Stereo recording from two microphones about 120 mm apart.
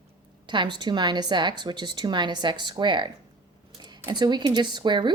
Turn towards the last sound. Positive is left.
turn(degrees=-40)  # may be behind; listen again after turning